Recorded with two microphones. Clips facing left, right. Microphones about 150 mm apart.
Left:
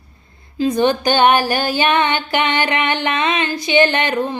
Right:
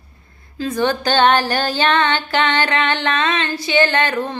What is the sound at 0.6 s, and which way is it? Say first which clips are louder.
Female singing: left 4 dB; 15° left (ahead or behind).